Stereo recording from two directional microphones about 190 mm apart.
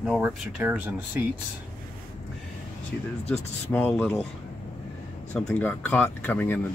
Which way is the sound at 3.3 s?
10° left (ahead or behind).